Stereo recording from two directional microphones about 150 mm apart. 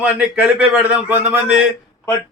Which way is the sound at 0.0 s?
10° right (ahead or behind).